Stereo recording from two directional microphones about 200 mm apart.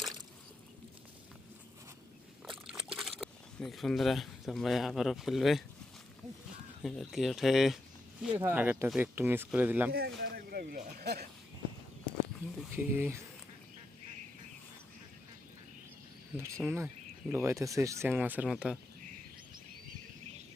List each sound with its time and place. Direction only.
2.5 s a sound: 5° right (ahead or behind)
6.8 s speech: centre (ahead or behind)
9.9 s speech: 50° right (ahead or behind)
12.7 s speech: 10° right (ahead or behind)
16.4 s speech: 15° right (ahead or behind)